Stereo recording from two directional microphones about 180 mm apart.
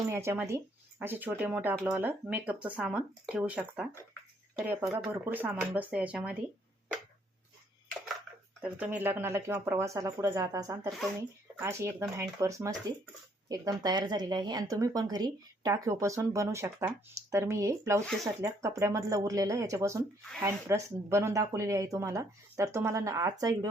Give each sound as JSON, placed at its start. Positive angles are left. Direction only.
{"t": 0.1, "sound": "speech", "side_deg": -15}
{"t": 8.6, "sound": "speech", "side_deg": -10}